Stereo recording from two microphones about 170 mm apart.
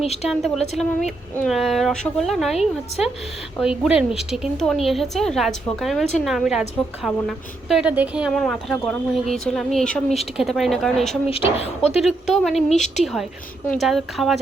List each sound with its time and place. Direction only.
0.0 s speech: 40° left (ahead or behind)
0.3 s a woman's voice: centre (ahead or behind)
11.6 s speech: 40° left (ahead or behind)
11.9 s a woman's voice: centre (ahead or behind)
12.7 s a woman's voice: 45° left (ahead or behind)
13.7 s a woman's voice: centre (ahead or behind)